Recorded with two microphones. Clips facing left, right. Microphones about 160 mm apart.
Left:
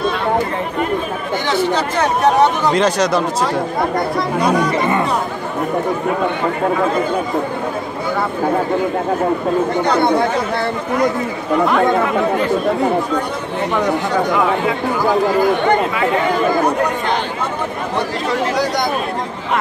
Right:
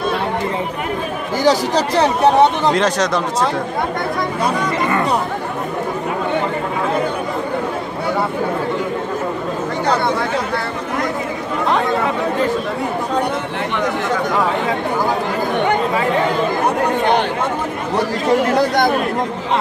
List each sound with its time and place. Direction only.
1.4 s speech: 40° right (ahead or behind)
2.7 s speech: centre (ahead or behind)